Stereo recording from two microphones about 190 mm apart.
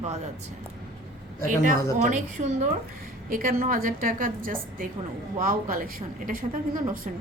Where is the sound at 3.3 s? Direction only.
45° right (ahead or behind).